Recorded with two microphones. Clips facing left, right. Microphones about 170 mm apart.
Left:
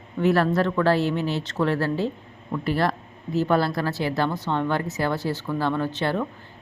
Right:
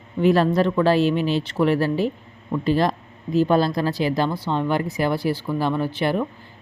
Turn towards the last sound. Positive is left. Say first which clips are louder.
# right 3 dB
turn(degrees=-10)  # may be behind; listen again after turning